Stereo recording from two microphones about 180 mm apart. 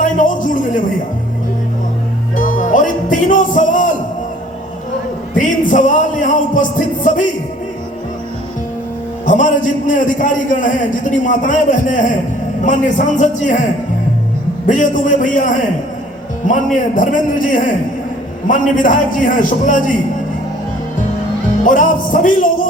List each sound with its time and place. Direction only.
0.0 s a man's voice: 45° left (ahead or behind)
2.3 s music: 45° left (ahead or behind)
5.4 s a man's voice: 45° left (ahead or behind)
9.2 s a man's voice: 45° left (ahead or behind)
14.7 s a man's voice: 45° left (ahead or behind)
16.7 s a man's voice: 45° left (ahead or behind)
21.6 s a man's voice: 45° left (ahead or behind)